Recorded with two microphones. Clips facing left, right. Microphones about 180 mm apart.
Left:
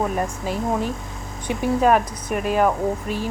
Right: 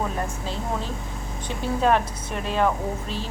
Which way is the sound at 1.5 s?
10° left (ahead or behind).